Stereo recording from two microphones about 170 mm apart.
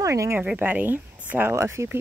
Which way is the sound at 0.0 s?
20° right (ahead or behind).